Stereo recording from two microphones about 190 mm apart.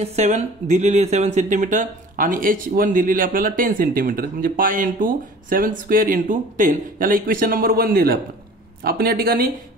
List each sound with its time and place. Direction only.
0.0 s speech: 35° right (ahead or behind); by 9.5 s 50° right (ahead or behind)